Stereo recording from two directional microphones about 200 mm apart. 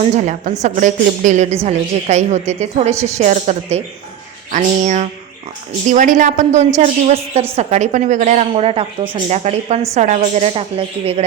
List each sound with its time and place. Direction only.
0.0 s a woman's voice: 35° right (ahead or behind)